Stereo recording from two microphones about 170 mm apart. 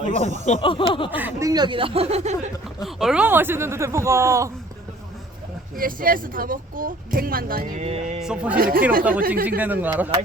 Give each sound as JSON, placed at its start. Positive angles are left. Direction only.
{"t": 0.6, "sound": "a sound", "side_deg": 30}
{"t": 1.1, "sound": "speech", "side_deg": -10}
{"t": 1.5, "sound": "speech", "side_deg": -25}
{"t": 2.8, "sound": "speech", "side_deg": 0}
{"t": 5.7, "sound": "speech", "side_deg": -55}
{"t": 7.9, "sound": "speech", "side_deg": -40}
{"t": 8.2, "sound": "a man's voice", "side_deg": -5}
{"t": 8.5, "sound": "speech", "side_deg": -60}
{"t": 9.6, "sound": "speech", "side_deg": -10}